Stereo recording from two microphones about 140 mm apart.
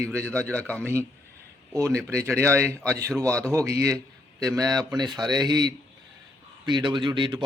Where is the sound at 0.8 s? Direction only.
20° right (ahead or behind).